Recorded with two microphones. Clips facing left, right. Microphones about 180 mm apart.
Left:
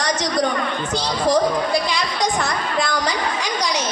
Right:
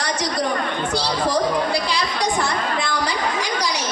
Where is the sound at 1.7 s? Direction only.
35° right (ahead or behind).